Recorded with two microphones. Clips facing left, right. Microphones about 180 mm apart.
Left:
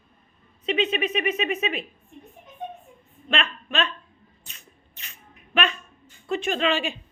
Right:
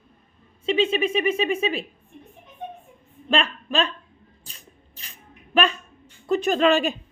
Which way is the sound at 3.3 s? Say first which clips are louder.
Right 4 dB; 35° right (ahead or behind).